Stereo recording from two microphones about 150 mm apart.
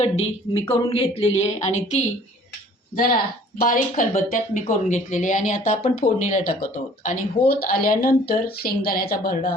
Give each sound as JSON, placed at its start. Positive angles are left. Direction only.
{"t": 0.0, "sound": "speech", "side_deg": 40}
{"t": 3.6, "sound": "speech", "side_deg": 65}
{"t": 6.1, "sound": "speech", "side_deg": 55}